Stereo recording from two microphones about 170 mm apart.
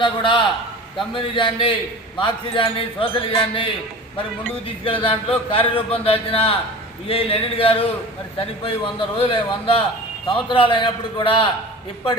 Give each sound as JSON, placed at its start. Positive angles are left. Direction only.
{"t": 0.0, "sound": "a man's voice", "side_deg": 30}
{"t": 4.8, "sound": "a man's voice", "side_deg": 30}